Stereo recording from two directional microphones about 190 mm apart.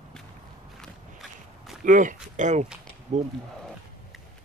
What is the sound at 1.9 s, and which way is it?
Speech, 40° right (ahead or behind).